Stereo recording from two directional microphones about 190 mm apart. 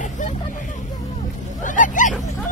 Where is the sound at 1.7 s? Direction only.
40° left (ahead or behind).